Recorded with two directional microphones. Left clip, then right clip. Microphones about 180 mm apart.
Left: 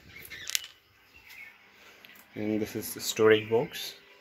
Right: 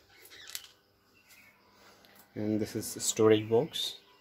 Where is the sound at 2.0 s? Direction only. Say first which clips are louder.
Left 2 dB; 20° right (ahead or behind).